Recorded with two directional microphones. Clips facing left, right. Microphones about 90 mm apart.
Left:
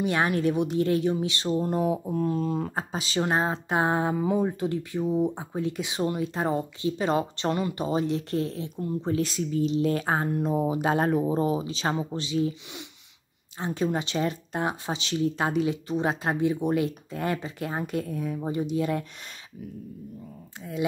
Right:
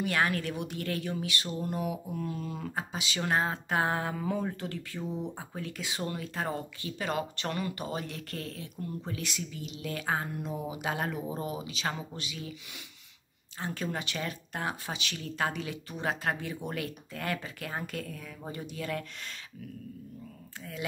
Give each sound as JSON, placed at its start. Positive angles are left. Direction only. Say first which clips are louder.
{"t": 0.0, "sound": "speech", "louder": "left 5 dB", "side_deg": 20}
{"t": 3.3, "sound": "speech", "louder": "left 1 dB", "side_deg": 25}
{"t": 13.6, "sound": "speech", "louder": "left 8 dB", "side_deg": 20}